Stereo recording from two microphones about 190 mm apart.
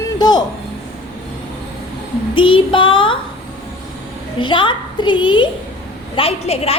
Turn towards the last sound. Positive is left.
turn(degrees=30)  # may be behind; listen again after turning